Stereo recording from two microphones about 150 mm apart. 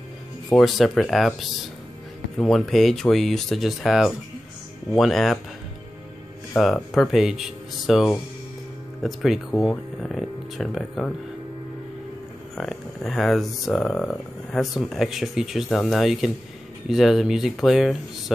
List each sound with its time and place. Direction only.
0.5 s speech: centre (ahead or behind)
6.5 s speech: centre (ahead or behind)
12.5 s speech: centre (ahead or behind)